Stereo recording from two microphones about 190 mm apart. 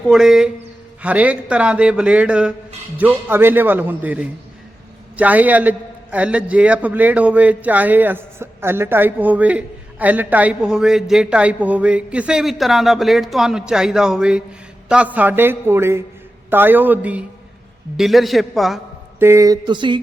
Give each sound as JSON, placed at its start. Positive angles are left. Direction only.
{"t": 0.1, "sound": "a man's voice", "side_deg": -5}
{"t": 19.2, "sound": "speech", "side_deg": -15}